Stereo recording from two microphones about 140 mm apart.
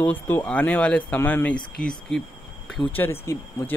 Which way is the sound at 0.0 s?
10° left (ahead or behind).